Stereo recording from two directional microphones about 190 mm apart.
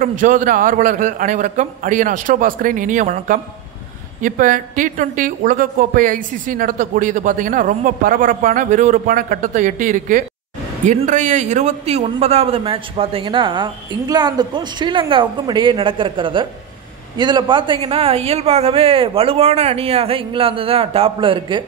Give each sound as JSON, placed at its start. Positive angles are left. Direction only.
{"t": 0.0, "sound": "a woman's voice", "side_deg": -45}